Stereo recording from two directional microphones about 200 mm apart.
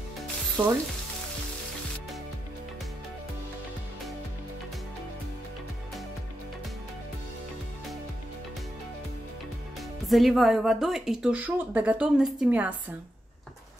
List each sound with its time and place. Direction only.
0.6 s frying: 25° right (ahead or behind)
10.0 s a woman's voice: centre (ahead or behind)